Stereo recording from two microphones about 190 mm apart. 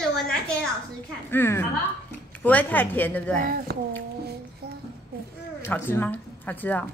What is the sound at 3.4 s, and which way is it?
Speech, 55° right (ahead or behind).